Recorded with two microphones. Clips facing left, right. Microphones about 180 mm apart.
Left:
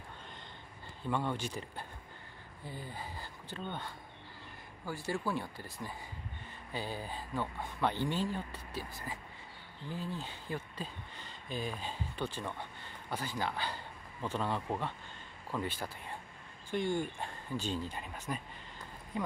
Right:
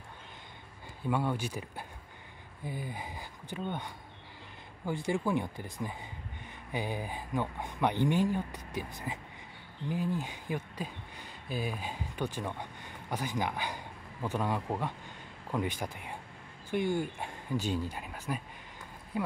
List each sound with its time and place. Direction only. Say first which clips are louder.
1.0 s speech: right 3 dB; 10° right (ahead or behind)